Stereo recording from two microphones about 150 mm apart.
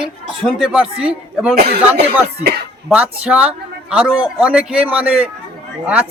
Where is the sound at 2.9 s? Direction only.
10° right (ahead or behind).